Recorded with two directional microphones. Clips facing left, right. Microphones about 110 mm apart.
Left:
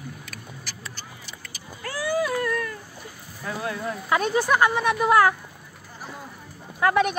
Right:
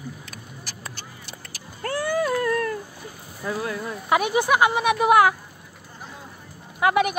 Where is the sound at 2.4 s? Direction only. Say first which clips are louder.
Right 3 dB; 35° right (ahead or behind).